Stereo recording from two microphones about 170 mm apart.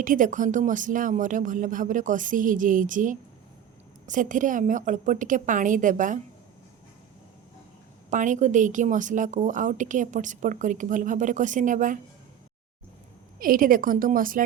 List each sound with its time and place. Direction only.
0.0 s a woman's voice: 50° right (ahead or behind)
8.1 s a woman's voice: 50° right (ahead or behind)
13.4 s a woman's voice: 55° right (ahead or behind)